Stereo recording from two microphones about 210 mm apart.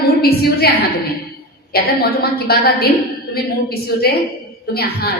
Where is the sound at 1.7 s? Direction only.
45° left (ahead or behind).